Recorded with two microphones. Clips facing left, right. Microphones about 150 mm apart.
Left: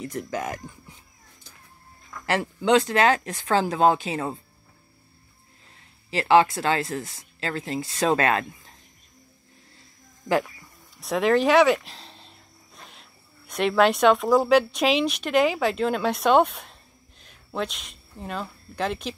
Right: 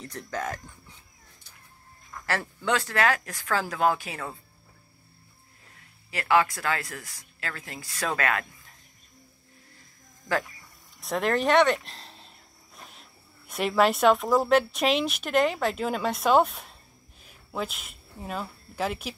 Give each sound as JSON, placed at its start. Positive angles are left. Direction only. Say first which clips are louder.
{"t": 0.0, "sound": "speech", "louder": "left 4 dB", "side_deg": 10}
{"t": 2.2, "sound": "speech", "louder": "left 6 dB", "side_deg": 20}
{"t": 5.8, "sound": "speech", "louder": "left 7 dB", "side_deg": 25}
{"t": 11.0, "sound": "speech", "louder": "left 5 dB", "side_deg": 0}